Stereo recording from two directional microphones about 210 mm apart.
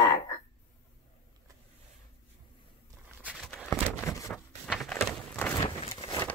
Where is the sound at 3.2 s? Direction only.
Centre (ahead or behind).